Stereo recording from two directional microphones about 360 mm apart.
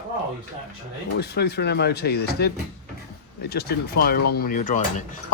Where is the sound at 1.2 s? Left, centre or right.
Left.